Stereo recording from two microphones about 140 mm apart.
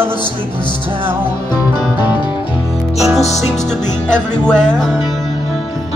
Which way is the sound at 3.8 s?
60° left (ahead or behind).